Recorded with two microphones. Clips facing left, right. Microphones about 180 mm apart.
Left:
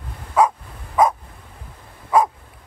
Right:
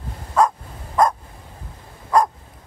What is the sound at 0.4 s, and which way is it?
Dog, 10° left (ahead or behind).